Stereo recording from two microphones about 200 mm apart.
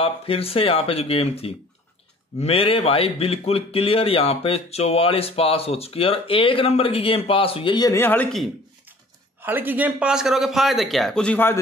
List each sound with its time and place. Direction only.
0.0 s speech: 30° left (ahead or behind); by 8.5 s 5° left (ahead or behind)
9.4 s a man's voice: 10° right (ahead or behind); by 11.5 s 10° left (ahead or behind)